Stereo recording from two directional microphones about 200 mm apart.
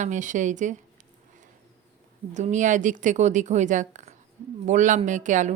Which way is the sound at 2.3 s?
35° right (ahead or behind).